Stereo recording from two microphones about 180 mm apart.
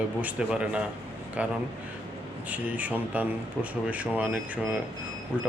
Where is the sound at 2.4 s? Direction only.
10° right (ahead or behind).